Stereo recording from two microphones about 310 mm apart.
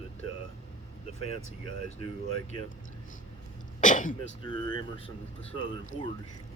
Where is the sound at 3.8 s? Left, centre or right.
Left.